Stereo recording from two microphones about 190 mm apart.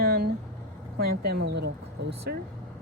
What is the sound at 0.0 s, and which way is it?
Vehicle, 55° right (ahead or behind).